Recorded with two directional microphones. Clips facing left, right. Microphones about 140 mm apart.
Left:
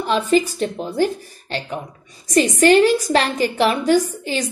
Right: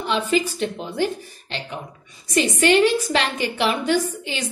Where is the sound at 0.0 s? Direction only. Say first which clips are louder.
Left 4 dB; 40° left (ahead or behind).